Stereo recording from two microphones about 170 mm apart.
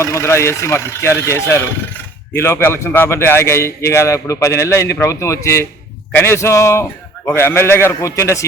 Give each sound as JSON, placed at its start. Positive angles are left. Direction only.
{"t": 0.0, "sound": "a man's voice", "side_deg": 15}